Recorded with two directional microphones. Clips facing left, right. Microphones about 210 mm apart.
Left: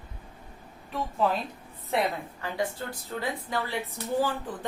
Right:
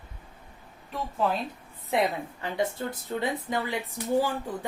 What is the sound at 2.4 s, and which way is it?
A woman's voice, 20° right (ahead or behind).